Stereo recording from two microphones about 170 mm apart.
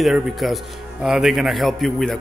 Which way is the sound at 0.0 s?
Centre (ahead or behind).